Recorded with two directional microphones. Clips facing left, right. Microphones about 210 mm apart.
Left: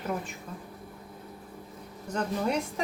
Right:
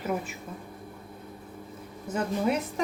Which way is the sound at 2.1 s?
5° right (ahead or behind).